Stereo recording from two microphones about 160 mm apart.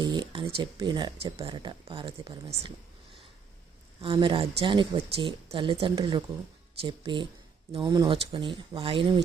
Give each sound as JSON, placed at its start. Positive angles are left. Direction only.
{"t": 0.0, "sound": "speech", "side_deg": -25}
{"t": 4.0, "sound": "speech", "side_deg": -30}